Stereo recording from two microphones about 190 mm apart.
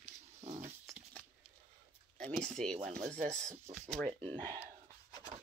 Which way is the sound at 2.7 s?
40° right (ahead or behind).